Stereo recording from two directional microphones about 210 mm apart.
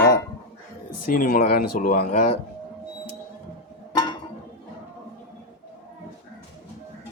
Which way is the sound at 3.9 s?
20° left (ahead or behind).